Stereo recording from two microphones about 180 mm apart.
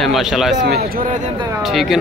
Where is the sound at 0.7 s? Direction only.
60° right (ahead or behind).